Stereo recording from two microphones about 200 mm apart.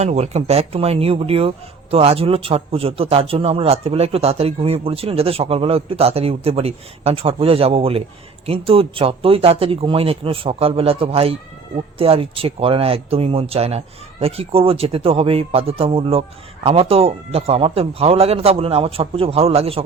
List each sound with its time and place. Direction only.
0.0 s speech: 35° right (ahead or behind)